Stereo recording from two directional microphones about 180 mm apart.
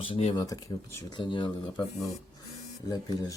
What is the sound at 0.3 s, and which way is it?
Speech, 20° left (ahead or behind).